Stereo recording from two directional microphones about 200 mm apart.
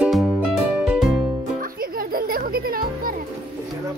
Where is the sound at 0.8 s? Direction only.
Centre (ahead or behind).